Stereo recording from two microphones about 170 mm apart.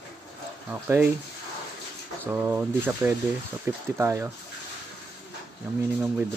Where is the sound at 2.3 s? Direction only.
10° right (ahead or behind).